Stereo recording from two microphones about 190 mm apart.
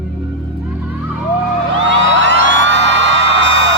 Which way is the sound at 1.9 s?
80° right.